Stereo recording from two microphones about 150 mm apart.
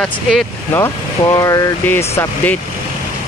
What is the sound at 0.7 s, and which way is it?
Speech, 15° left (ahead or behind).